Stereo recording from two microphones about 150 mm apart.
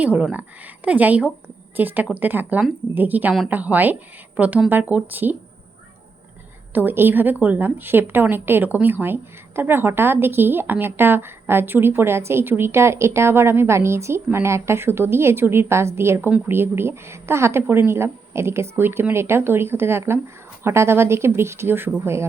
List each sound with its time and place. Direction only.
0.0 s a woman's voice: 10° right (ahead or behind)
6.7 s a woman's voice: 15° right (ahead or behind)